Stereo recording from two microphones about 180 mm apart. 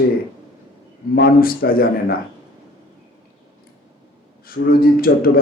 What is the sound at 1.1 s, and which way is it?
Speech, 55° left (ahead or behind).